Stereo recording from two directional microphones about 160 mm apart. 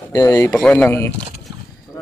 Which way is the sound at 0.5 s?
5° left (ahead or behind).